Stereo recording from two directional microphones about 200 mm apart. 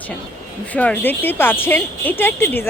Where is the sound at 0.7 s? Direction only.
10° left (ahead or behind).